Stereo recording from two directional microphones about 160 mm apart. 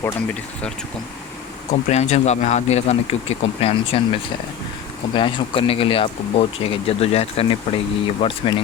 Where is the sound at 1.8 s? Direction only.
45° left (ahead or behind).